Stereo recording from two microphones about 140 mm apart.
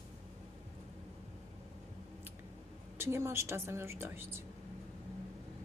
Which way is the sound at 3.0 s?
20° right (ahead or behind).